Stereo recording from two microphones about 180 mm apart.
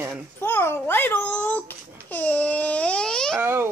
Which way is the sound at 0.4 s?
15° left (ahead or behind).